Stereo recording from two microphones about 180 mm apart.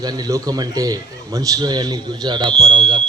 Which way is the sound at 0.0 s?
20° right (ahead or behind).